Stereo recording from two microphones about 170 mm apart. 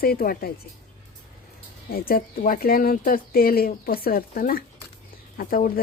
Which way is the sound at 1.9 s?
60° left (ahead or behind).